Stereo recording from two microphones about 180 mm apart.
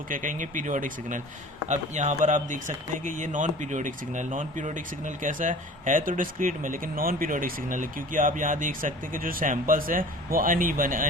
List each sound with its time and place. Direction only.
0.1 s speech: 45° right (ahead or behind)